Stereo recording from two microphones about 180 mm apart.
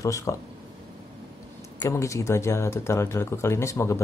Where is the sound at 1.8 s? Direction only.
15° left (ahead or behind).